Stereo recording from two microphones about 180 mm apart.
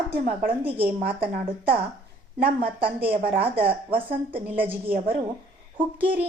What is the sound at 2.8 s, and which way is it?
A woman's voice, 30° right (ahead or behind).